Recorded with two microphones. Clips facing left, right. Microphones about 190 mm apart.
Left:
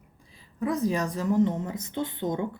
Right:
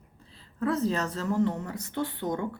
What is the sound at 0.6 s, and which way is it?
A woman's voice, 15° left (ahead or behind).